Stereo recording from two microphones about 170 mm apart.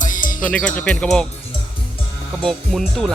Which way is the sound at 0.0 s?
50° left (ahead or behind).